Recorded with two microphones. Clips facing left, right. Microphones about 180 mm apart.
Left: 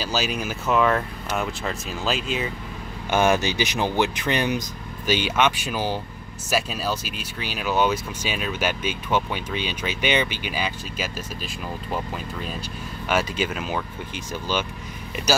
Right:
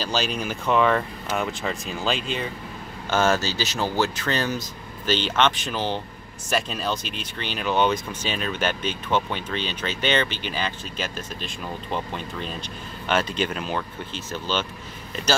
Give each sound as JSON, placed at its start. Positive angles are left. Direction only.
{"t": 0.0, "sound": "speech", "side_deg": 10}
{"t": 3.1, "sound": "speech", "side_deg": 15}